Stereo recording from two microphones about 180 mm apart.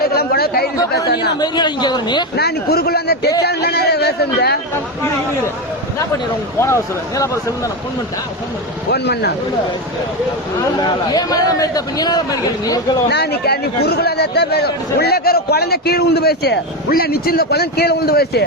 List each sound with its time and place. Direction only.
0.0 s chatter: 60° left (ahead or behind)
0.9 s speech: 65° left (ahead or behind)
1.4 s a man's voice: 25° left (ahead or behind)
2.3 s speech: 60° left (ahead or behind)
6.6 s speech: 15° left (ahead or behind)
8.9 s speech: 65° left (ahead or behind)
10.8 s a man's voice: 20° left (ahead or behind)
13.1 s speech: 65° left (ahead or behind)